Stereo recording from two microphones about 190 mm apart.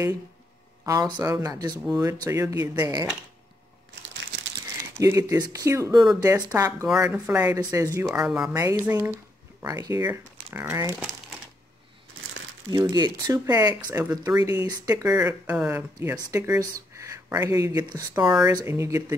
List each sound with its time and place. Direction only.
0.8 s speech: 20° right (ahead or behind)
4.9 s speech: 15° right (ahead or behind)
8.5 s speech: 15° right (ahead or behind)
12.7 s speech: 20° right (ahead or behind)
18.2 s speech: 5° right (ahead or behind)
18.5 s speech: 15° right (ahead or behind)